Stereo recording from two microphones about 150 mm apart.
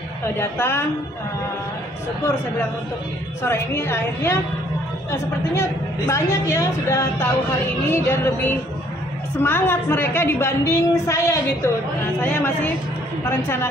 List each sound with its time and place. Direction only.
0.4 s a woman's voice: 15° left (ahead or behind)
3.4 s a woman's voice: 15° left (ahead or behind)